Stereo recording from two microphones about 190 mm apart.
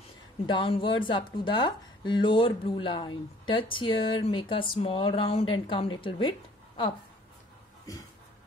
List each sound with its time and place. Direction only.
0.5 s a woman's voice: 25° left (ahead or behind)